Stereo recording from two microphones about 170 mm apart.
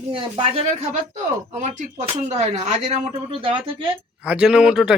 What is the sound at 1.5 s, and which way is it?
Speech, 45° right (ahead or behind).